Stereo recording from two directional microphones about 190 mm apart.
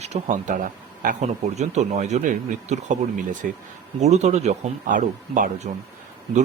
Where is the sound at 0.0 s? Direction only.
40° right (ahead or behind).